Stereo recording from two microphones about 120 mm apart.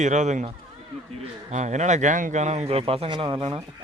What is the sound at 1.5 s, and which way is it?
A man's voice, 90° right.